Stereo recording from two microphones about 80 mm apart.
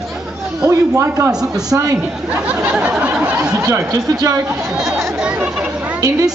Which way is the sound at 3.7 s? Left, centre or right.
Right.